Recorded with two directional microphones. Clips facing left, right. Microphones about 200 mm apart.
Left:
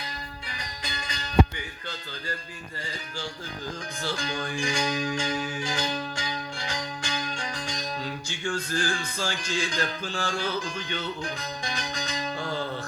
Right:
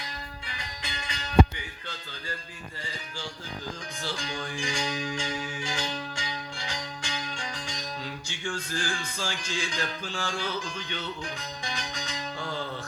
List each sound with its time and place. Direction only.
0.5 s music: 40° left (ahead or behind)
4.0 s music: 45° left (ahead or behind)